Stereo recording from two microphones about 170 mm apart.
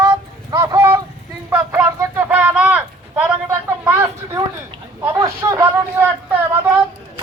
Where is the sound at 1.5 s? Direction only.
10° right (ahead or behind).